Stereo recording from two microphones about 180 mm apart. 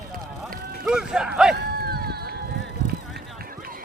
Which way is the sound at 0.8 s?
5° right (ahead or behind).